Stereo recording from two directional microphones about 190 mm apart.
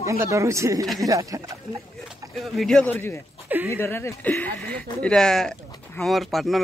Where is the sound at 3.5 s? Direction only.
10° right (ahead or behind).